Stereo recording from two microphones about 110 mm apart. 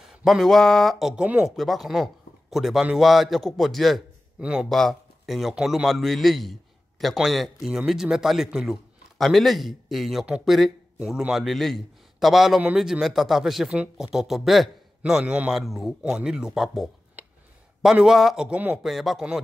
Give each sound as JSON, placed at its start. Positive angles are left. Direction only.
{"t": 0.2, "sound": "speech", "side_deg": 0}
{"t": 4.6, "sound": "a man's voice", "side_deg": 5}
{"t": 15.6, "sound": "speech", "side_deg": 0}
{"t": 17.2, "sound": "a sound", "side_deg": -15}
{"t": 17.8, "sound": "speech", "side_deg": -5}
{"t": 18.8, "sound": "speech", "side_deg": 0}